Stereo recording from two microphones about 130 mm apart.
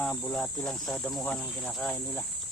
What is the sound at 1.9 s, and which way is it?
Speech, 20° left (ahead or behind).